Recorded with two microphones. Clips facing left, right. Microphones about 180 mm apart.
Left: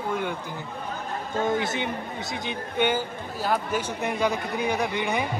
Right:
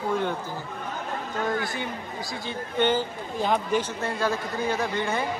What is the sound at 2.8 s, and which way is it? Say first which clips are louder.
A man's voice: right 1 dB; 15° left (ahead or behind).